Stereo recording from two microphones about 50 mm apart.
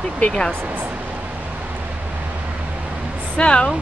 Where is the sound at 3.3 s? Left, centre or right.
Left.